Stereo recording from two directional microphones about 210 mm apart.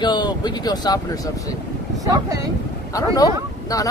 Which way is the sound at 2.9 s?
15° left (ahead or behind).